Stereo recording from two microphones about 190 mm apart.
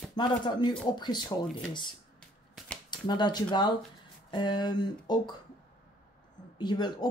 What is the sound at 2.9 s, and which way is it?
Speech, 25° left (ahead or behind).